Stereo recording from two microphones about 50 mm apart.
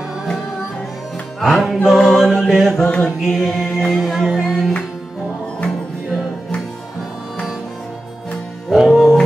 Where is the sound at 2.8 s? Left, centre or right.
Left.